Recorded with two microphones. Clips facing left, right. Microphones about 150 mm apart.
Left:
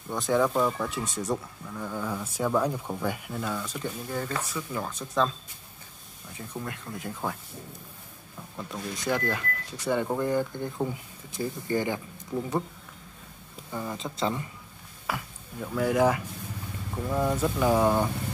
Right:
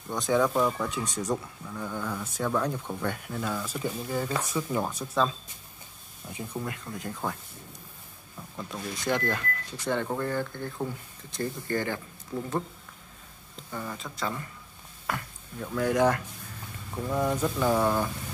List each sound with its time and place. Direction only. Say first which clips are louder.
0.1 s speech: even; centre (ahead or behind)
4.5 s speech: right 4 dB; 20° right (ahead or behind)
6.6 s speech: right 1 dB; centre (ahead or behind)
8.5 s speech: left 1 dB; centre (ahead or behind)
13.7 s speech: left 2 dB; 10° left (ahead or behind)
13.9 s speech: left 7 dB; 25° left (ahead or behind)
15.0 s speech: even; 5° left (ahead or behind)